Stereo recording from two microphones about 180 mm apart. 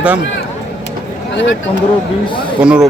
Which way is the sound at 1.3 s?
85° left.